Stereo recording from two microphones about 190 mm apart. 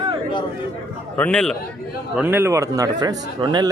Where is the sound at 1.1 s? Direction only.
5° left (ahead or behind).